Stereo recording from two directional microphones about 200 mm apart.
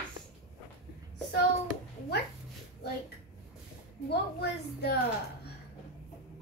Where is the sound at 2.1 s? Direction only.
55° left (ahead or behind).